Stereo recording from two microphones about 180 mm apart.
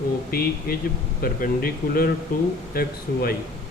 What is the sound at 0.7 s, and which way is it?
Speech, 55° left (ahead or behind).